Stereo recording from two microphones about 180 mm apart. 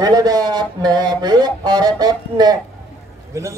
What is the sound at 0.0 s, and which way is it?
A man's voice, 20° right (ahead or behind).